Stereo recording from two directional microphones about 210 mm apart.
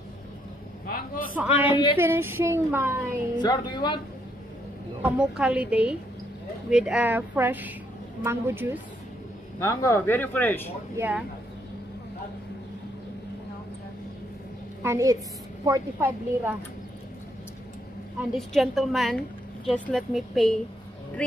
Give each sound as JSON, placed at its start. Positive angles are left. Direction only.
{"t": 0.8, "sound": "a sound", "side_deg": 45}
{"t": 1.4, "sound": "speech", "side_deg": -10}
{"t": 3.3, "sound": "a woman's voice", "side_deg": 20}
{"t": 5.0, "sound": "a woman's voice", "side_deg": -5}
{"t": 9.6, "sound": "speech", "side_deg": 15}
{"t": 11.0, "sound": "speech", "side_deg": -5}
{"t": 14.8, "sound": "a woman's voice", "side_deg": -15}
{"t": 18.5, "sound": "a woman's voice", "side_deg": 0}